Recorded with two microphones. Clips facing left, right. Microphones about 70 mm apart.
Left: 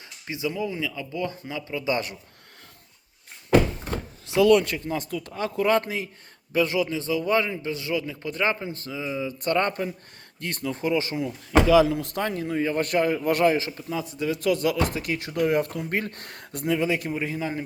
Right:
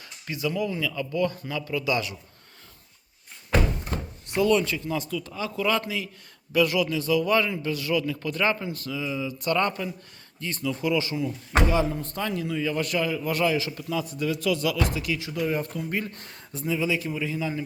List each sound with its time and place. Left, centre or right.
0.3 s speech: centre
4.4 s speech: left
6.5 s speech: left
10.4 s speech: left
11.7 s speech: left
12.2 s speech: left
13.6 s speech: left
14.3 s speech: left